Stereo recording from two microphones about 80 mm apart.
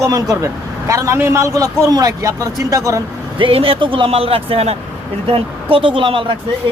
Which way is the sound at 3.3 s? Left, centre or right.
Right.